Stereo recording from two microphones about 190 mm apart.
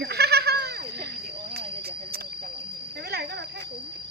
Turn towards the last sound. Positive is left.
turn(degrees=-55)  # may be behind; listen again after turning